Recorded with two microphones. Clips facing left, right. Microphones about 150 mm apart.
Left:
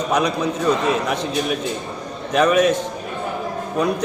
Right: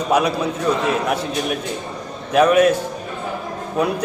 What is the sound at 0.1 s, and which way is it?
Speech, 5° right (ahead or behind).